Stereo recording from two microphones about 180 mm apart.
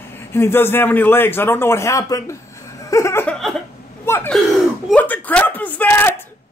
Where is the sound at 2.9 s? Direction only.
15° left (ahead or behind).